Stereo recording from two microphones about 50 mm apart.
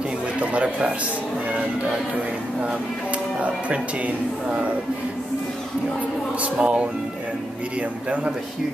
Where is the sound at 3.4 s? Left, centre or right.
Right.